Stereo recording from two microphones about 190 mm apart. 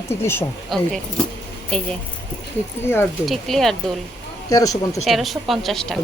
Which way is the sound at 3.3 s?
Centre (ahead or behind).